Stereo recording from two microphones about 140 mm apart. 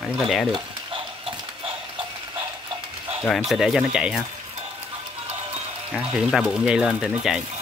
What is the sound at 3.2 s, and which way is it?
Speech, centre (ahead or behind).